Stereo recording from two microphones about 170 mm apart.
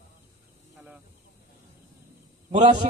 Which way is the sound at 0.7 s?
10° right (ahead or behind).